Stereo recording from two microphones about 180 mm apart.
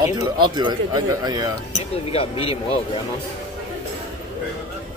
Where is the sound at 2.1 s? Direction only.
30° left (ahead or behind).